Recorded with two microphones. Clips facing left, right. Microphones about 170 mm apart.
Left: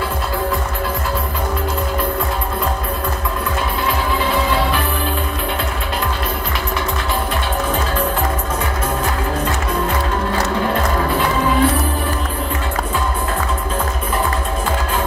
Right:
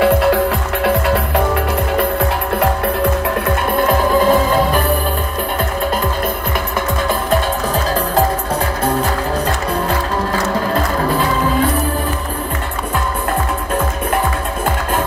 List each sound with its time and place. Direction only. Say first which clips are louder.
0.0 s music: right 9 dB; 75° right (ahead or behind)
3.7 s music: right 10 dB; 45° right (ahead or behind)